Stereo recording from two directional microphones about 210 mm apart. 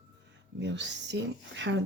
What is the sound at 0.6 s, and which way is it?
Speech, 60° right (ahead or behind).